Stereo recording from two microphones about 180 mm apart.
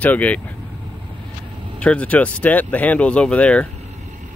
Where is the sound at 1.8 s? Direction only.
5° left (ahead or behind).